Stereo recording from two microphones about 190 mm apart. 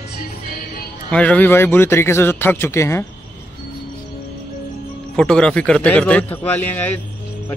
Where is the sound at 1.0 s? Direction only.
5° left (ahead or behind).